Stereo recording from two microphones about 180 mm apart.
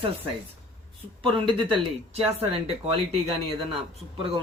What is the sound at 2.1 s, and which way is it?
Speech, 35° right (ahead or behind).